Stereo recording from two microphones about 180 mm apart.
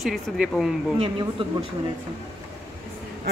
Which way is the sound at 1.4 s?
30° right (ahead or behind).